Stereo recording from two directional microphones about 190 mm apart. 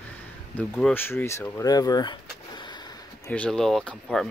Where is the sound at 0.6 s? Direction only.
5° left (ahead or behind); by 2.6 s 25° left (ahead or behind).